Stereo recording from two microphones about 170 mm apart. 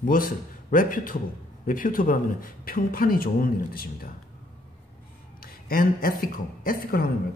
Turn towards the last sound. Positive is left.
turn(degrees=60)  # may be behind; listen again after turning